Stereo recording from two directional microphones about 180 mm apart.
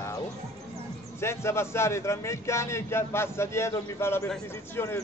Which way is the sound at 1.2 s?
15° left (ahead or behind).